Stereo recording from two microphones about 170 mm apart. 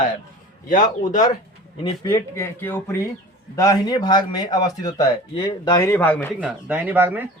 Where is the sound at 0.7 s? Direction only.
50° left (ahead or behind).